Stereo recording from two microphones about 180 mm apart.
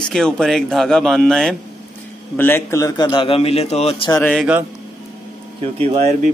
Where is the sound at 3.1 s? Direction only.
30° left (ahead or behind).